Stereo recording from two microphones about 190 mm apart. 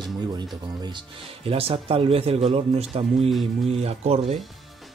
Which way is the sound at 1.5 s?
30° right (ahead or behind).